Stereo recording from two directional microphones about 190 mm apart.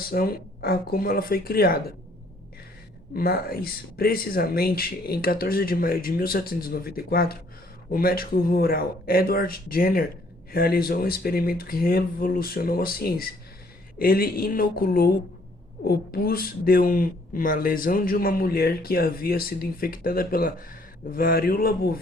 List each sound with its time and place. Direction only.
0.1 s speech: 50° left (ahead or behind)
3.2 s speech: 55° left (ahead or behind)